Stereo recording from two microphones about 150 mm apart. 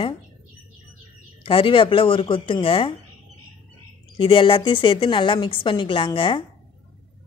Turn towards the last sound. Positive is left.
turn(degrees=35)  # may be behind; listen again after turning